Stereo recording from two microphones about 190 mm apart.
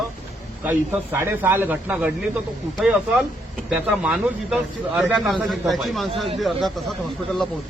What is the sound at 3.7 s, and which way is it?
Speech, 5° right (ahead or behind).